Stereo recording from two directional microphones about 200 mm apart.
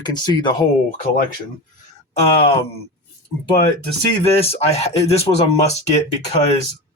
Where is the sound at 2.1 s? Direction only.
25° left (ahead or behind).